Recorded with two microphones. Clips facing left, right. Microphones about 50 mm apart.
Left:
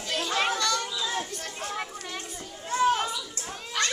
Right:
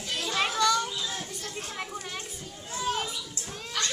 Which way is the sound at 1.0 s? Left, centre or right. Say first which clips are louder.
Left 4 dB; left.